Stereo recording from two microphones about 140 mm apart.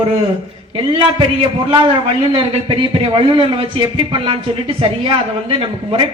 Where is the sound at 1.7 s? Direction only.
40° right (ahead or behind).